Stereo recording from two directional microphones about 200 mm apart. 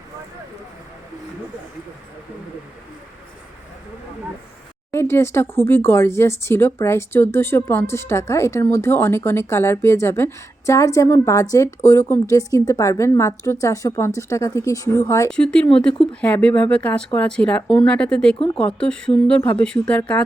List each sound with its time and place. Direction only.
4.9 s speech: 10° left (ahead or behind)